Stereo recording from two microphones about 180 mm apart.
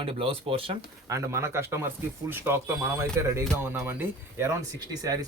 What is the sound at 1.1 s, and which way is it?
Speech, 15° right (ahead or behind).